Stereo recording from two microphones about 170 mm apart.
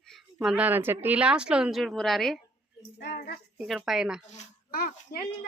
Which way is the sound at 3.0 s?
70° left (ahead or behind).